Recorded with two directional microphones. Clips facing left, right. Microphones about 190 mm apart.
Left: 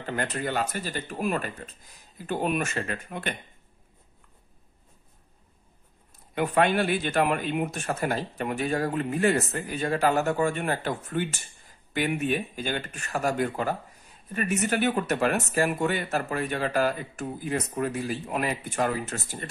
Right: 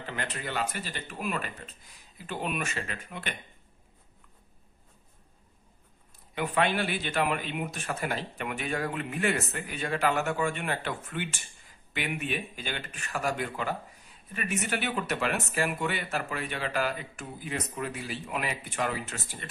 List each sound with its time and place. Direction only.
0.0 s speech: 45° left (ahead or behind)
6.3 s speech: 50° left (ahead or behind)